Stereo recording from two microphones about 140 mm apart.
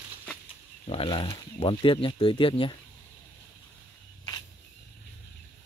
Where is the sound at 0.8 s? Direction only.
40° left (ahead or behind).